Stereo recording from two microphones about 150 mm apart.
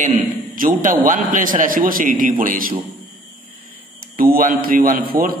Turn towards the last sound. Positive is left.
turn(degrees=-75)  # may be behind; listen again after turning